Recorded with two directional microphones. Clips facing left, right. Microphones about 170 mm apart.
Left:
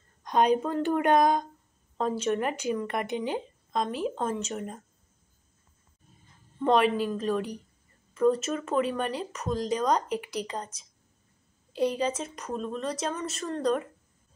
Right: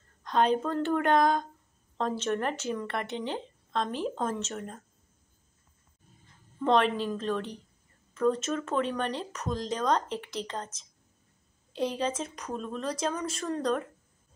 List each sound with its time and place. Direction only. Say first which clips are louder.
0.2 s speech: left 2 dB; 15° left (ahead or behind)
6.6 s speech: left 2 dB; 10° left (ahead or behind)